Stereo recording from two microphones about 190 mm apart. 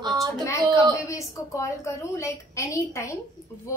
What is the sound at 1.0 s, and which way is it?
A woman's voice, 15° left (ahead or behind).